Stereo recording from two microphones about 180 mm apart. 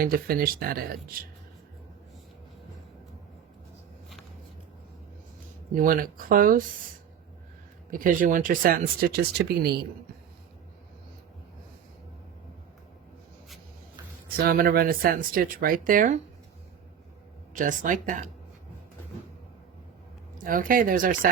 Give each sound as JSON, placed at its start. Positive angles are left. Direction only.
{"t": 0.0, "sound": "speech", "side_deg": -55}
{"t": 5.7, "sound": "speech", "side_deg": -50}
{"t": 7.9, "sound": "speech", "side_deg": -50}
{"t": 14.3, "sound": "speech", "side_deg": -55}
{"t": 17.5, "sound": "speech", "side_deg": -45}
{"t": 20.4, "sound": "speech", "side_deg": -50}